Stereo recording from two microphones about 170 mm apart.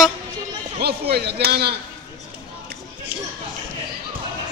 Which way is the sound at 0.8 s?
70° right (ahead or behind).